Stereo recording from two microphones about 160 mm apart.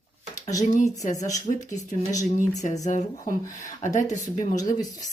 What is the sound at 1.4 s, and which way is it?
Speech, 50° left (ahead or behind).